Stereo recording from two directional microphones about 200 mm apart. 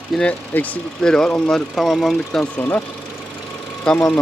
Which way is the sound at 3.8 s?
5° left (ahead or behind).